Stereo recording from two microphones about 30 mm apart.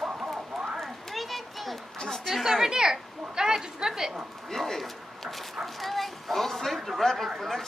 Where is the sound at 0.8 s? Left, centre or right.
Centre.